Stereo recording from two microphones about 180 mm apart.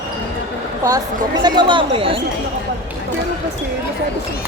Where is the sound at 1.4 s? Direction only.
25° right (ahead or behind).